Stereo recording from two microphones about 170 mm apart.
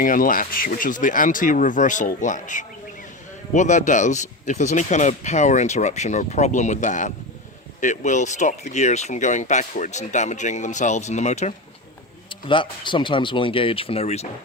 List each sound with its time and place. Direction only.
0.0 s speech: 55° left (ahead or behind)
12.3 s speech: 30° left (ahead or behind)